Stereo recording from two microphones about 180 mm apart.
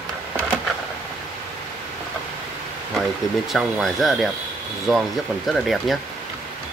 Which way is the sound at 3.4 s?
Centre (ahead or behind).